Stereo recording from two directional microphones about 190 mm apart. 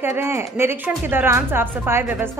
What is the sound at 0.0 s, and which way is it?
Speech, 15° right (ahead or behind).